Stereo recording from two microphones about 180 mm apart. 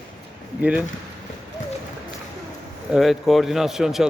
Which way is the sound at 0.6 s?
5° right (ahead or behind).